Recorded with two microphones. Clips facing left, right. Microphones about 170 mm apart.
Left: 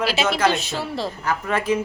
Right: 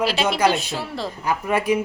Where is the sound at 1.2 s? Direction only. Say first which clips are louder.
Right 3 dB; 15° right (ahead or behind).